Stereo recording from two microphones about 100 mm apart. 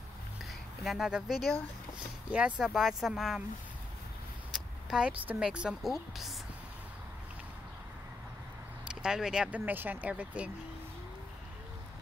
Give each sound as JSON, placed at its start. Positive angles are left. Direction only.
{"t": 0.8, "sound": "speech", "side_deg": -5}
{"t": 4.8, "sound": "speech", "side_deg": -5}
{"t": 8.8, "sound": "speech", "side_deg": -5}